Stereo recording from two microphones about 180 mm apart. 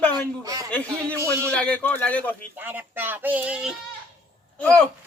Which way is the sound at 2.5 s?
10° right (ahead or behind).